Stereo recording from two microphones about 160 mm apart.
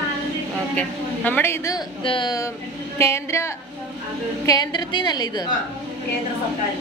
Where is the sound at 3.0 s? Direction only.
15° left (ahead or behind).